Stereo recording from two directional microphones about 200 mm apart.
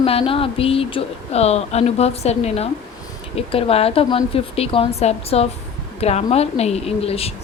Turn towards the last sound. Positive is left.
turn(degrees=30)  # may be behind; listen again after turning